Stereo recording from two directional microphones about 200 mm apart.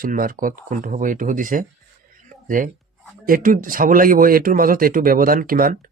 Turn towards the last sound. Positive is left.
turn(degrees=-45)  # may be behind; listen again after turning